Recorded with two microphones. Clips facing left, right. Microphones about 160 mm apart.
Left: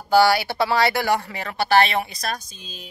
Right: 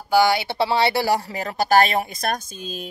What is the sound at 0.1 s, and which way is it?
Speech, 20° right (ahead or behind).